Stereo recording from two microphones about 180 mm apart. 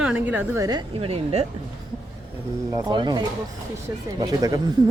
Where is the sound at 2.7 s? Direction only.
20° right (ahead or behind).